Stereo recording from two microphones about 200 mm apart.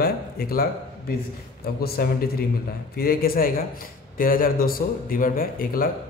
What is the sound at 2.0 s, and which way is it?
A man's voice, 50° left (ahead or behind).